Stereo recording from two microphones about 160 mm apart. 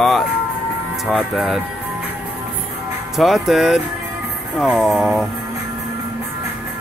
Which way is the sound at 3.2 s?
Centre (ahead or behind).